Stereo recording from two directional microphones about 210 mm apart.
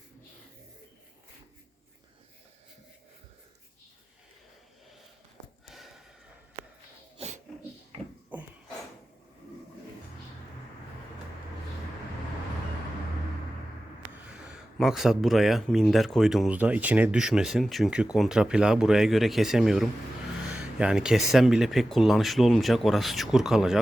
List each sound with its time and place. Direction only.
5.6 s gasp: centre (ahead or behind)
8.3 s a sound: 10° right (ahead or behind)
14.3 s speech: 5° right (ahead or behind)